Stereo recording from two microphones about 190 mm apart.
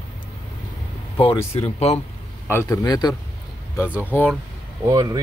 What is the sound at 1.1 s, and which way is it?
Speech, 30° left (ahead or behind).